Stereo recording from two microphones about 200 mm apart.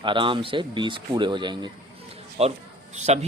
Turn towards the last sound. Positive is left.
turn(degrees=-35)  # may be behind; listen again after turning